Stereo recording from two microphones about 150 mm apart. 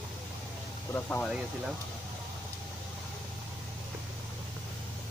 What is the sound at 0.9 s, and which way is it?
Speech, 10° left (ahead or behind).